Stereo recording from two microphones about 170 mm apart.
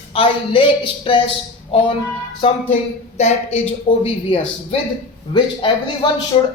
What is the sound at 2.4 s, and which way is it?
A man's voice, 30° left (ahead or behind).